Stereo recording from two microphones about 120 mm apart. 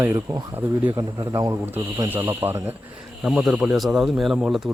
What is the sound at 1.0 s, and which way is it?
Speech, 30° right (ahead or behind).